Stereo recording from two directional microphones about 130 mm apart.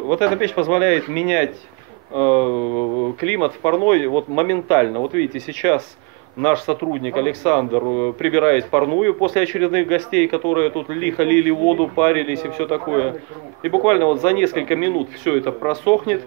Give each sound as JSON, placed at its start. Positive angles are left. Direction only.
{"t": 0.4, "sound": "speech", "side_deg": 10}
{"t": 3.7, "sound": "speech", "side_deg": 15}
{"t": 5.5, "sound": "speech", "side_deg": 10}
{"t": 13.7, "sound": "speech", "side_deg": 15}